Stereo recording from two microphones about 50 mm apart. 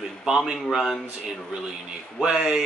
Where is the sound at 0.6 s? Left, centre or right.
Centre.